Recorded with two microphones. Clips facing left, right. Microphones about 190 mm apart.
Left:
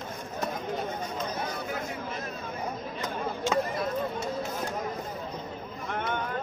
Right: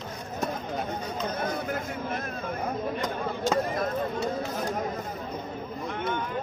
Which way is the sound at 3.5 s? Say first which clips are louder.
Right 1 dB; 40° right (ahead or behind).